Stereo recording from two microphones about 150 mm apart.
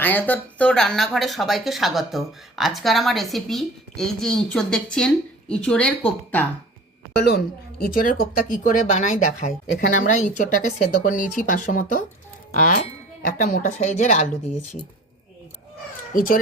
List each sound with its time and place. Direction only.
0.0 s speech: 10° left (ahead or behind)
7.3 s speech: 80° left; by 14.3 s 50° left (ahead or behind)
16.1 s a child's voice: 70° left (ahead or behind)